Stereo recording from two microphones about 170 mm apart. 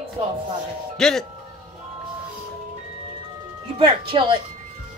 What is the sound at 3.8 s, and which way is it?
Speech, 30° right (ahead or behind).